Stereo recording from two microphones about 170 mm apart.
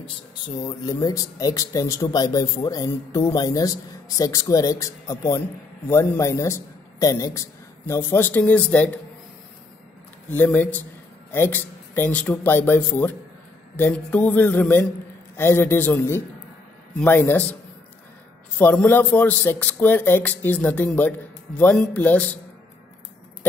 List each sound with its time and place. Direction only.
0.7 s a man's voice: 20° left (ahead or behind)
10.3 s a man's voice: 10° left (ahead or behind)
18.6 s a man's voice: 10° left (ahead or behind)